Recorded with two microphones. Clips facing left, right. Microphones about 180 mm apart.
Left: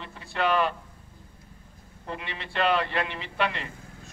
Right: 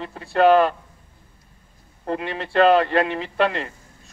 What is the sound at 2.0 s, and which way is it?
Speech, 40° right (ahead or behind).